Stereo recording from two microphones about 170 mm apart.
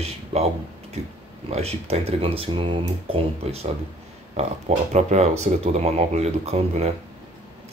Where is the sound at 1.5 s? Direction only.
35° right (ahead or behind).